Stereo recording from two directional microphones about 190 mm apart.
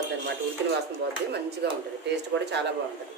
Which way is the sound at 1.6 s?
60° right (ahead or behind).